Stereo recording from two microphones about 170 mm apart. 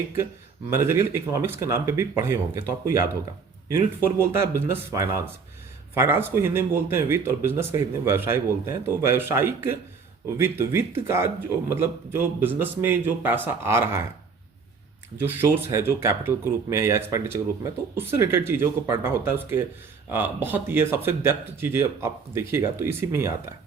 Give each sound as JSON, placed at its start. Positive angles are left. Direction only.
{"t": 0.7, "sound": "speech", "side_deg": -15}
{"t": 4.7, "sound": "speech", "side_deg": -15}
{"t": 15.2, "sound": "speech", "side_deg": -15}